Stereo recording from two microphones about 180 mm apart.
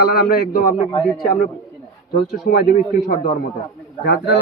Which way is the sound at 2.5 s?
60° left (ahead or behind).